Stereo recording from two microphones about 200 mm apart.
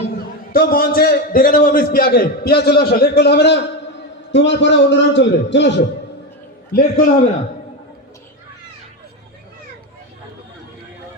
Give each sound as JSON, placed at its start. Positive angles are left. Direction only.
{"t": 0.5, "sound": "a man's voice", "side_deg": 50}
{"t": 6.7, "sound": "a man's voice", "side_deg": 45}